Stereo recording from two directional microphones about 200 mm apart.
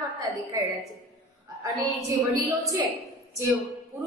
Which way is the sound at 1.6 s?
15° right (ahead or behind).